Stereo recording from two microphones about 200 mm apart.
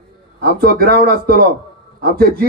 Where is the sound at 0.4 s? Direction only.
50° right (ahead or behind).